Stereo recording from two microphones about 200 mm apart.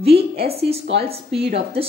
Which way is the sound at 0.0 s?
30° right (ahead or behind).